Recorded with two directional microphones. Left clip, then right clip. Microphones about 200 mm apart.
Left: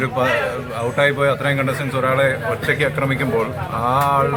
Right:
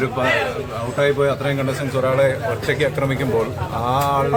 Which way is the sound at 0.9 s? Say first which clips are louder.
Left 1 dB; 30° left (ahead or behind).